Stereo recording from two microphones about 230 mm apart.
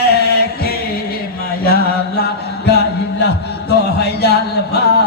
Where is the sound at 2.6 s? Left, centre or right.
Left.